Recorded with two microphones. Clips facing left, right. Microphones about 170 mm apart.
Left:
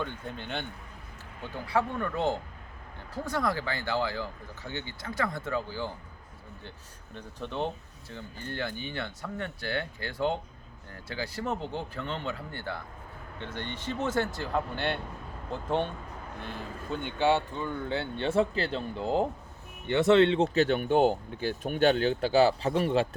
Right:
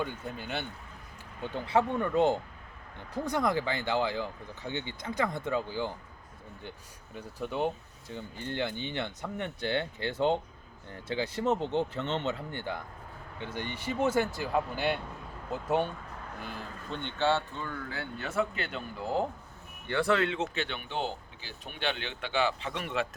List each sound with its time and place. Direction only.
0.0 s speech: 5° right (ahead or behind)
1.4 s speech: 20° right (ahead or behind); by 23.0 s 30° left (ahead or behind)